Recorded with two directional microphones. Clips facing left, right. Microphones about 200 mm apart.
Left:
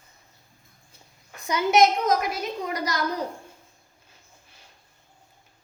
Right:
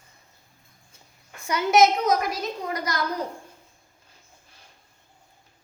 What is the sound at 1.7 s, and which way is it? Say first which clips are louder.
A child's voice: right 1 dB; centre (ahead or behind).